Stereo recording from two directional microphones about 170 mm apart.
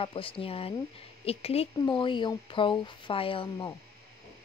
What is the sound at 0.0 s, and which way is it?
Speech, 30° left (ahead or behind).